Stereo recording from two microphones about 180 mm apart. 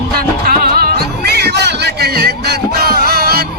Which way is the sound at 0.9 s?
65° right (ahead or behind).